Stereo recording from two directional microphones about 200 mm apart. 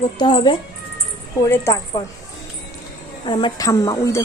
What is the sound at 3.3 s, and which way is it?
Speech, 20° left (ahead or behind).